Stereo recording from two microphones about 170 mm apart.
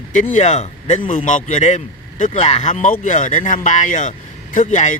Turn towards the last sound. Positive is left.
turn(degrees=45)  # may be behind; listen again after turning